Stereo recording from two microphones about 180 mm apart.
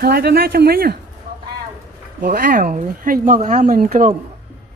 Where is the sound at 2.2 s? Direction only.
55° right (ahead or behind).